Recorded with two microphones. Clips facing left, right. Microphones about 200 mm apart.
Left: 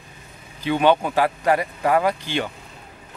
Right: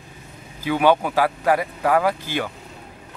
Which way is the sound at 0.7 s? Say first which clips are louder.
Even; 10° right (ahead or behind).